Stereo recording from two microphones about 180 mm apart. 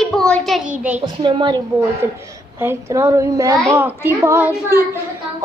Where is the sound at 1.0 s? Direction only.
25° right (ahead or behind).